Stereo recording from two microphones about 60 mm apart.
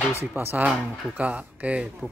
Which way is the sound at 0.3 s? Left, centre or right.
Right.